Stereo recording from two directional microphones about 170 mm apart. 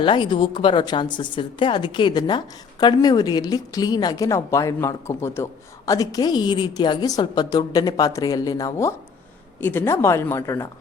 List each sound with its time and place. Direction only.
0.0 s a woman's voice: 30° left (ahead or behind)